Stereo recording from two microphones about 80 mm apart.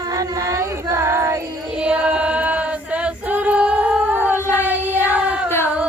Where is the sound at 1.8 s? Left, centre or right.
Centre.